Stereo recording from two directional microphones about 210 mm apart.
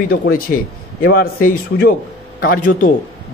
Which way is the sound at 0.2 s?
45° left (ahead or behind).